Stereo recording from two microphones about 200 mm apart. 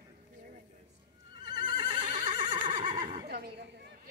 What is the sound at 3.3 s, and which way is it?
Neigh, 55° right (ahead or behind).